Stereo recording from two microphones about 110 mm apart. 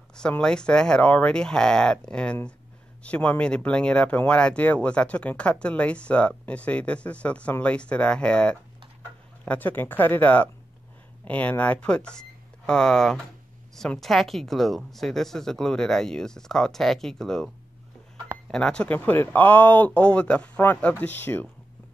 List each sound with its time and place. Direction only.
0.1 s speech: 5° left (ahead or behind)
18.5 s speech: 10° left (ahead or behind)